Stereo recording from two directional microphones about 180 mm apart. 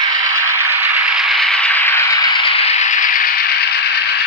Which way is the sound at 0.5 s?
15° right (ahead or behind).